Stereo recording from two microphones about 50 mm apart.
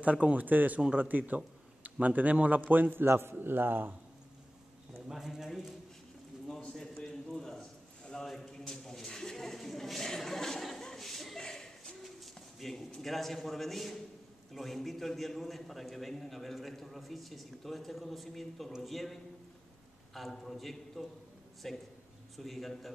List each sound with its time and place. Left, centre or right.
0.0 s a man's voice: right
5.1 s a man's voice: centre
6.7 s a sound: centre
12.2 s pigeon: centre
13.0 s a man's voice: centre
20.2 s a man's voice: centre